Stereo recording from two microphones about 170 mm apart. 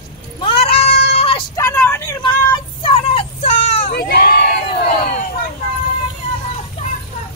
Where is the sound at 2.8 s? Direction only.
35° left (ahead or behind).